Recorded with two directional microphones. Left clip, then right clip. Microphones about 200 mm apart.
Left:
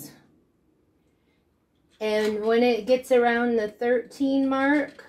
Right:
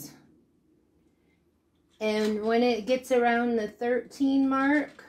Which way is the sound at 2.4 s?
25° right (ahead or behind).